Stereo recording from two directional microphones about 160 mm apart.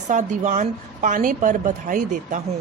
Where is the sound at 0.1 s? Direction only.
50° right (ahead or behind).